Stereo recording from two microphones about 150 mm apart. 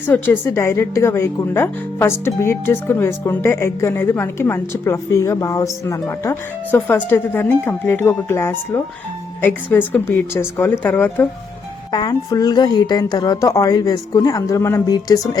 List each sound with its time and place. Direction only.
0.0 s a woman's voice: 15° left (ahead or behind)
11.9 s a woman's voice: 25° left (ahead or behind)